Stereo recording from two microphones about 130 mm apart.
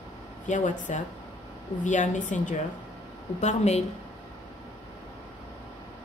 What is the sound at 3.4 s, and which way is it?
Speech, 60° left (ahead or behind).